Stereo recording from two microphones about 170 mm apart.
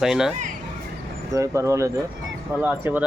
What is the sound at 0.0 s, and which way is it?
Speech, 5° right (ahead or behind).